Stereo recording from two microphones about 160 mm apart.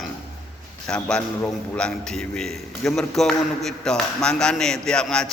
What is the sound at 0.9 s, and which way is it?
A man's voice, 5° left (ahead or behind).